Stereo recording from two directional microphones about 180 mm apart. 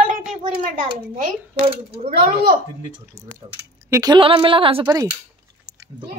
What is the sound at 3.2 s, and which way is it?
Speech, 15° right (ahead or behind).